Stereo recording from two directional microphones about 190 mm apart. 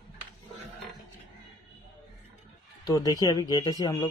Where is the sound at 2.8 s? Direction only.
20° left (ahead or behind).